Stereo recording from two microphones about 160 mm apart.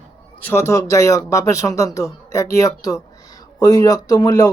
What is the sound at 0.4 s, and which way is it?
A man's voice, 15° left (ahead or behind).